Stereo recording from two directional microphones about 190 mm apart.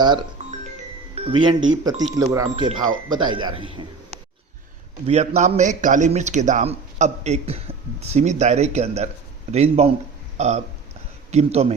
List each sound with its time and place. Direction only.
0.0 s a man's voice: 25° right (ahead or behind)